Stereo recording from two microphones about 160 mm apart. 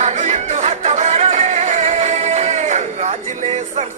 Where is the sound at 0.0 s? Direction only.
45° right (ahead or behind).